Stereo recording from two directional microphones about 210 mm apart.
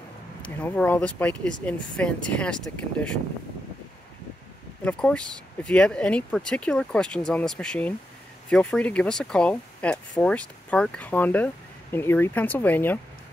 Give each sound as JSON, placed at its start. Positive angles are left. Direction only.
{"t": 0.4, "sound": "speech", "side_deg": 5}
{"t": 4.8, "sound": "speech", "side_deg": 5}